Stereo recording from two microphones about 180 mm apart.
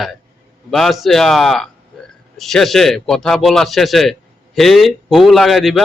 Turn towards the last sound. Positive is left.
turn(degrees=0)  # may be behind; listen again after turning